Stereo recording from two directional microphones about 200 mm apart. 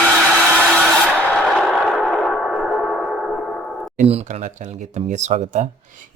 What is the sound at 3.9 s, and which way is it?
Speech, 30° right (ahead or behind).